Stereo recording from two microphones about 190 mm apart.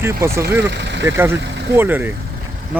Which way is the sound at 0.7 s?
65° right (ahead or behind).